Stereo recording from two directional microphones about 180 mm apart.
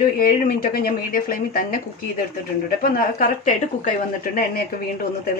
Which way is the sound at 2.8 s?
55° left (ahead or behind).